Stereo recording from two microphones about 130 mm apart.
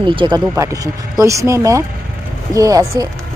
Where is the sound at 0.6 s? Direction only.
25° right (ahead or behind).